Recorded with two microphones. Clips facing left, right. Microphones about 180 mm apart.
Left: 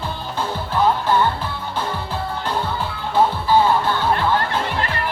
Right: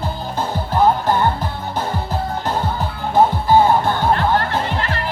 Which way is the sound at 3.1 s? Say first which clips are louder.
Right 3 dB; 45° right (ahead or behind).